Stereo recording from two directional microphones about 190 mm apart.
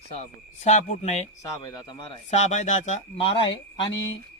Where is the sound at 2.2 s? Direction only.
35° left (ahead or behind).